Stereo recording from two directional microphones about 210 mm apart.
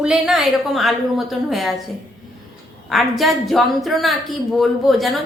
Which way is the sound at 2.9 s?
Centre (ahead or behind).